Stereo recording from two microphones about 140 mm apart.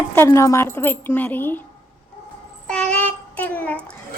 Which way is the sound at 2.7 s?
5° left (ahead or behind).